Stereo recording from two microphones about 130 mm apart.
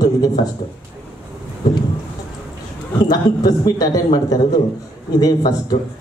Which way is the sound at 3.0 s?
30° left (ahead or behind).